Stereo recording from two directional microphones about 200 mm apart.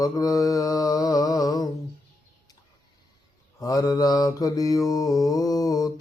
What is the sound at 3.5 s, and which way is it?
Mantra, 15° left (ahead or behind).